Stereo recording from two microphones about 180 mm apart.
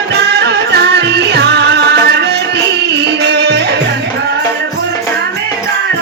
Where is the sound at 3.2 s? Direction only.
70° right (ahead or behind).